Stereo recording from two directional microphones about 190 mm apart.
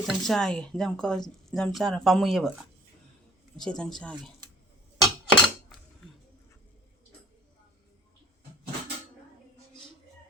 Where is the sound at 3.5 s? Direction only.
5° left (ahead or behind).